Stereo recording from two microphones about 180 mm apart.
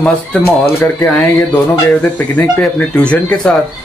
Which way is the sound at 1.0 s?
5° left (ahead or behind).